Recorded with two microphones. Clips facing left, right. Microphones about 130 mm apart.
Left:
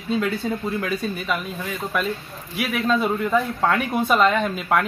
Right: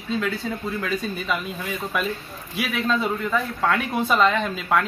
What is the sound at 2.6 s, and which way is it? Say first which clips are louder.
Speech: left 3 dB; centre (ahead or behind).